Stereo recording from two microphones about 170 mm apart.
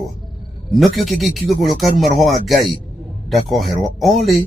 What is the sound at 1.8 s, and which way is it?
Speech, 45° left (ahead or behind).